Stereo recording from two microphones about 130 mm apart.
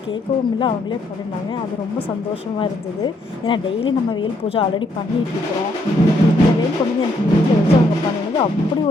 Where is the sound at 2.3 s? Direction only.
40° left (ahead or behind).